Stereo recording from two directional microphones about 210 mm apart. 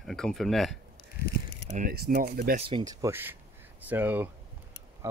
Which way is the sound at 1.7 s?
40° right (ahead or behind).